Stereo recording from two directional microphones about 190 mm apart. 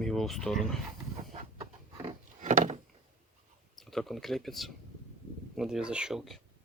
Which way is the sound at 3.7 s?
Centre (ahead or behind).